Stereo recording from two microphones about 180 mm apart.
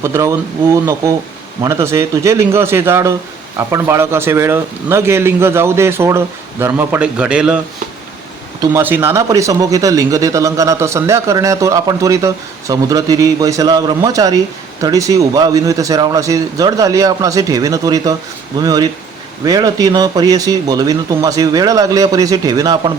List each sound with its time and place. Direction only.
0.0 s speech: 15° right (ahead or behind)
8.7 s speech: 10° right (ahead or behind)